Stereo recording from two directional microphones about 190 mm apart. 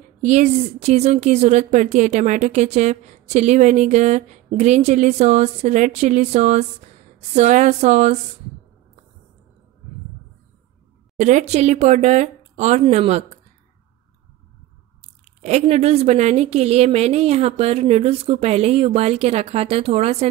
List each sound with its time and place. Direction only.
0.2 s a woman's voice: 40° right (ahead or behind)
11.1 s a woman's voice: 40° right (ahead or behind)
15.4 s a woman's voice: 35° right (ahead or behind)